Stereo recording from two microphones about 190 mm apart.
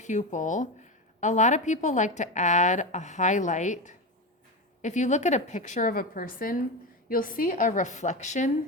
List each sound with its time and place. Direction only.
0.0 s speech: 40° left (ahead or behind)